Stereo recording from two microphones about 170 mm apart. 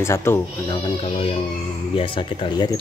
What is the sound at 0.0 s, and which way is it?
Speech, 15° left (ahead or behind).